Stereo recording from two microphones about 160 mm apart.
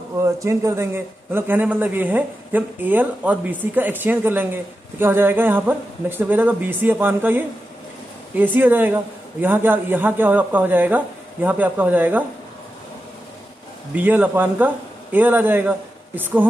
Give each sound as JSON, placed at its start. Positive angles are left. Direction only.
{"t": 0.4, "sound": "a man's voice", "side_deg": -20}
{"t": 13.9, "sound": "a man's voice", "side_deg": -10}